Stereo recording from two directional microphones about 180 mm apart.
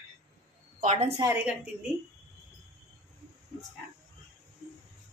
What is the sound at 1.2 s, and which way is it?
Speech, 10° right (ahead or behind).